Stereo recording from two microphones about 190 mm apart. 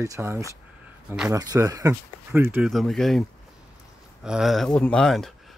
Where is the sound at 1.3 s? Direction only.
20° right (ahead or behind).